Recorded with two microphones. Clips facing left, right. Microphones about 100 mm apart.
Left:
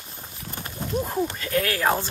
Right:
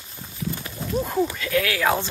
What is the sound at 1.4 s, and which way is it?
Speech, 40° left (ahead or behind).